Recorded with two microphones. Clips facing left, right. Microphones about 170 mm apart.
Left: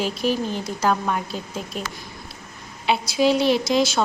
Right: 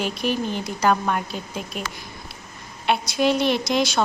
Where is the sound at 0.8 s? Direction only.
Centre (ahead or behind).